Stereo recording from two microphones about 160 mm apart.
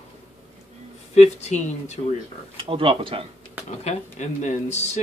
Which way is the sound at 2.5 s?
35° right (ahead or behind).